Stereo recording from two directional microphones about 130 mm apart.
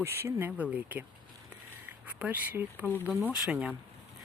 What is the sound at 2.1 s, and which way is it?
Speech, 10° right (ahead or behind).